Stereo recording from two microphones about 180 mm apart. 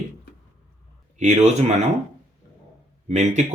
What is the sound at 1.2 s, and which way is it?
Speech, 40° right (ahead or behind).